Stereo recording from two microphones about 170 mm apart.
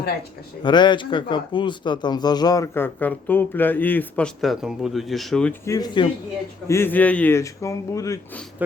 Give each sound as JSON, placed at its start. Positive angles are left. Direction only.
{"t": 0.6, "sound": "speech", "side_deg": 25}
{"t": 5.6, "sound": "speech", "side_deg": 20}
{"t": 6.7, "sound": "speech", "side_deg": 15}